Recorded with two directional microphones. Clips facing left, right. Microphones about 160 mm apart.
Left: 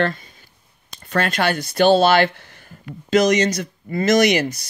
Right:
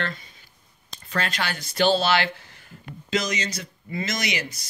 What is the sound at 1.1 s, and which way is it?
Speech, 55° left (ahead or behind).